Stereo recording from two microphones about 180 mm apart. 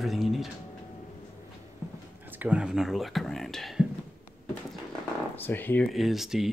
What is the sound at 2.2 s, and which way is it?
Speech, 10° right (ahead or behind).